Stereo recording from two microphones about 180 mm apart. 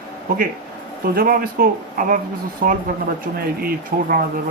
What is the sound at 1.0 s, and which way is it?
Speech, 55° right (ahead or behind).